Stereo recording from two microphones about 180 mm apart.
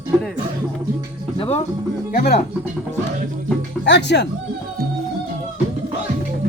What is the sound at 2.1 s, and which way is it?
Speech, 55° left (ahead or behind).